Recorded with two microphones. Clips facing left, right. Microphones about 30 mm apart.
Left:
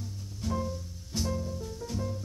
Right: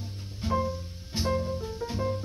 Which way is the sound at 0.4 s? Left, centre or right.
Right.